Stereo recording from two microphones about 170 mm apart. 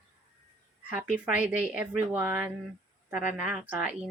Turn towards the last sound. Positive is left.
turn(degrees=-5)  # may be behind; listen again after turning